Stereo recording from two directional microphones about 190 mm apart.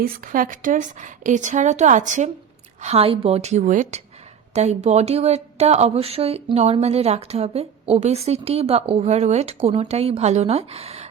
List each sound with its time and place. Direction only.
0.0 s speech: 45° right (ahead or behind)